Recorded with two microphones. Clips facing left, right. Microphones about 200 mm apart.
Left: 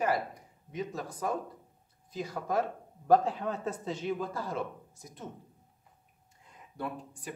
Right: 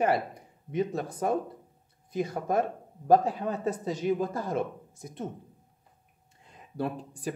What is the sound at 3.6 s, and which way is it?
Speech, 40° right (ahead or behind).